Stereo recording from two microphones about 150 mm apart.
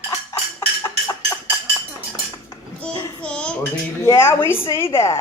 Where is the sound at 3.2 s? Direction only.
5° left (ahead or behind).